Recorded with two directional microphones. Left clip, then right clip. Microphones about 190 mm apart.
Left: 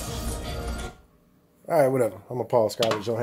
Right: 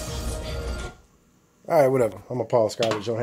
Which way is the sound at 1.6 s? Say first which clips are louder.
Right 2 dB; 25° right (ahead or behind).